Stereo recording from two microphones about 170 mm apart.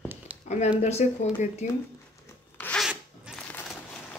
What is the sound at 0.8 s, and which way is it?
Speech, 40° left (ahead or behind).